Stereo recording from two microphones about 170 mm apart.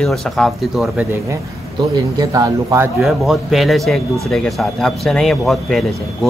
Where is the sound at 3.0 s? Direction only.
Centre (ahead or behind).